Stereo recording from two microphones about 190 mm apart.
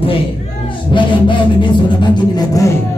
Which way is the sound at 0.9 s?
25° left (ahead or behind).